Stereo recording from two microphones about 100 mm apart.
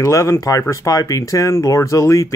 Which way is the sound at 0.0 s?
30° left (ahead or behind).